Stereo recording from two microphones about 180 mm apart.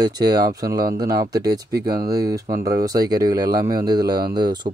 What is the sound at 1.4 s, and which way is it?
Speech, 60° right (ahead or behind).